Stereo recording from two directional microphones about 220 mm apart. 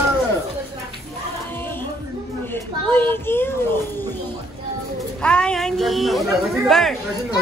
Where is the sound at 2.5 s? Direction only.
10° left (ahead or behind).